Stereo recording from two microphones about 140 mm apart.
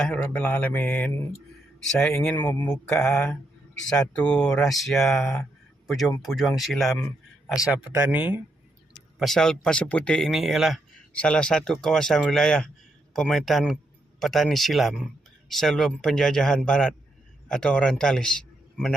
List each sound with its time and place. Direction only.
0.0 s speech: 10° left (ahead or behind)
7.0 s a sound: 20° left (ahead or behind)
7.9 s speech: 15° right (ahead or behind)
9.1 s speech: centre (ahead or behind)
11.1 s a man's voice: 10° left (ahead or behind)